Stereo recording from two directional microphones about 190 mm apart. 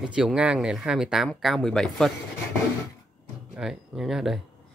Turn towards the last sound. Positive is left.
turn(degrees=0)  # may be behind; listen again after turning